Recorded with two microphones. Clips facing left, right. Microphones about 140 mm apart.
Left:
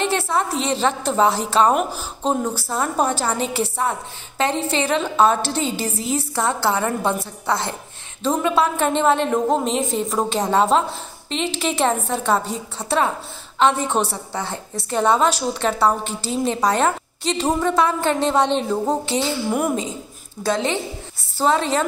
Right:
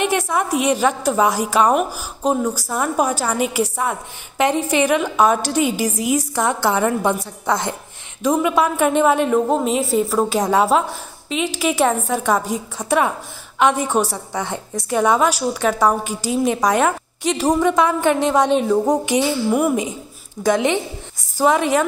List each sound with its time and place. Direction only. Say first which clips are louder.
0.0 s a woman's voice: right 2 dB; 15° right (ahead or behind)
20.4 s a woman's voice: right 4 dB; 15° right (ahead or behind)